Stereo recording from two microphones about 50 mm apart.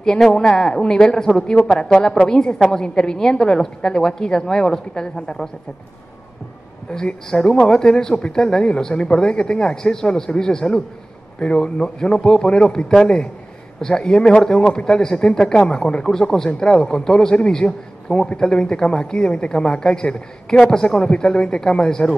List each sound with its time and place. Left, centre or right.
0.2 s a man's voice: centre
6.9 s a man's voice: centre